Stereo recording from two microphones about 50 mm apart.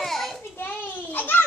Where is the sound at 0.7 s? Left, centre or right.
Left.